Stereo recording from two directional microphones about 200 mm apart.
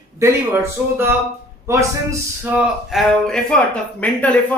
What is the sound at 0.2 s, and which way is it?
Speech, 15° right (ahead or behind).